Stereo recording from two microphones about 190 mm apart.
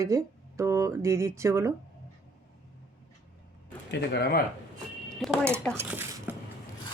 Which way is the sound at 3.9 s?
60° left (ahead or behind).